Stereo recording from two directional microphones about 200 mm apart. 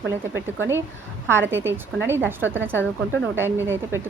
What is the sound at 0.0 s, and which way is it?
Speech, 65° right (ahead or behind).